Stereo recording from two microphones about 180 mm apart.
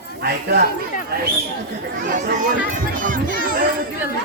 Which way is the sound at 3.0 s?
50° right (ahead or behind).